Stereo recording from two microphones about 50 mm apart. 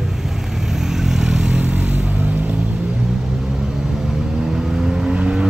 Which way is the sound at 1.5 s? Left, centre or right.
Right.